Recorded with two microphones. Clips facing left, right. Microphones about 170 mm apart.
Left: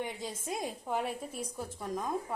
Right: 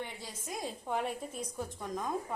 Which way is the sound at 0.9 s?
Centre (ahead or behind).